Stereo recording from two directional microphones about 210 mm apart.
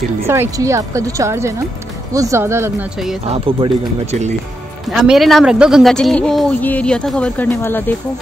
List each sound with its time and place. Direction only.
0.3 s a woman's voice: 15° right (ahead or behind)
3.3 s speech: 25° right (ahead or behind)
4.8 s speech: centre (ahead or behind)